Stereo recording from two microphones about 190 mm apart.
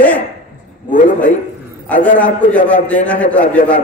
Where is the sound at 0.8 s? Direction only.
45° left (ahead or behind).